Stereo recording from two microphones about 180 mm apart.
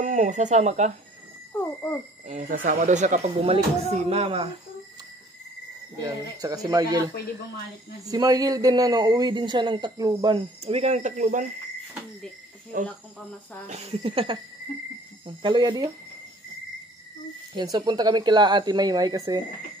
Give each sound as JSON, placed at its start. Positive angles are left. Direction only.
{"t": 0.0, "sound": "speech", "side_deg": -45}
{"t": 1.5, "sound": "a sound", "side_deg": 10}
{"t": 2.2, "sound": "speech", "side_deg": -50}
{"t": 5.9, "sound": "a man's voice", "side_deg": -20}
{"t": 13.7, "sound": "a man's voice", "side_deg": -35}
{"t": 17.6, "sound": "a man's voice", "side_deg": -25}